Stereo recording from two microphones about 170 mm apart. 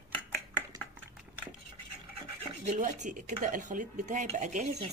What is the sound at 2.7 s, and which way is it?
Speech, 45° right (ahead or behind).